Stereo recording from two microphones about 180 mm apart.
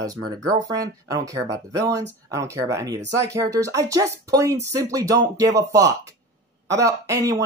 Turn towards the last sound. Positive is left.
turn(degrees=-20)  # may be behind; listen again after turning